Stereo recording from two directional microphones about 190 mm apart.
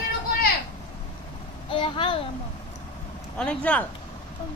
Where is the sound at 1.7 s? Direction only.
25° left (ahead or behind).